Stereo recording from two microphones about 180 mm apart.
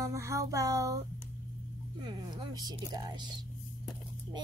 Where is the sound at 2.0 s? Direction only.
20° right (ahead or behind).